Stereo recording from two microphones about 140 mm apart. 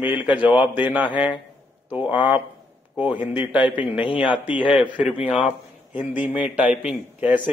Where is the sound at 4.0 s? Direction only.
35° left (ahead or behind).